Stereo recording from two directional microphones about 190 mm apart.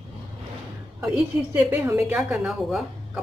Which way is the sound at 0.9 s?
10° right (ahead or behind).